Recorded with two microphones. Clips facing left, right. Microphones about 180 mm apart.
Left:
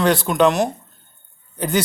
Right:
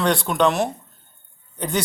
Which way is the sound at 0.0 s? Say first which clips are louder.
Left 3 dB; centre (ahead or behind).